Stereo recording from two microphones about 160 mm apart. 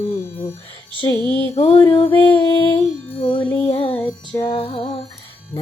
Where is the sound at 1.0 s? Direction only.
15° left (ahead or behind).